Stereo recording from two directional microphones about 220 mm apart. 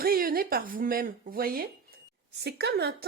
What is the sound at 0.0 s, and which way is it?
A woman's voice, 40° right (ahead or behind).